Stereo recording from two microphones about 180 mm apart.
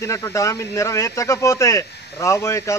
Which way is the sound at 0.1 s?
15° left (ahead or behind).